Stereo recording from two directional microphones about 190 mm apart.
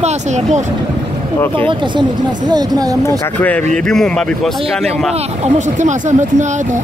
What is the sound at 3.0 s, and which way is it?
Speech, 10° left (ahead or behind).